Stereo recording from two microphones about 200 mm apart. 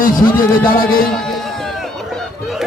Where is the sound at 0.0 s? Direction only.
45° left (ahead or behind).